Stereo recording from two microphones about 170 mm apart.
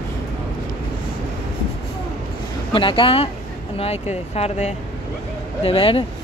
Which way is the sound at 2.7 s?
30° left (ahead or behind).